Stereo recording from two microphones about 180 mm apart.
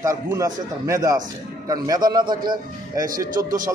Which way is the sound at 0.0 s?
20° right (ahead or behind).